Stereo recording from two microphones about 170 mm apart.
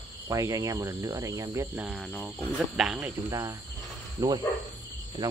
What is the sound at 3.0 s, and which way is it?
Speech, 20° right (ahead or behind).